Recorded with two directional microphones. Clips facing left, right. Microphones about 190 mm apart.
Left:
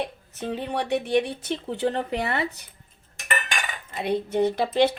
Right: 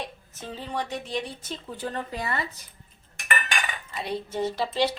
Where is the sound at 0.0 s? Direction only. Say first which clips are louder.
Left 7 dB; 65° left (ahead or behind).